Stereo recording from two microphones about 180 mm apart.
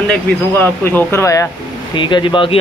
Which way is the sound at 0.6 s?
10° left (ahead or behind).